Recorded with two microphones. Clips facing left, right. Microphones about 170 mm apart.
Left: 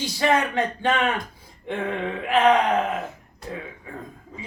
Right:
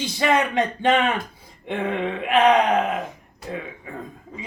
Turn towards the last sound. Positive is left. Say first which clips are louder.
# right 1 dB
turn(degrees=-15)  # may be behind; listen again after turning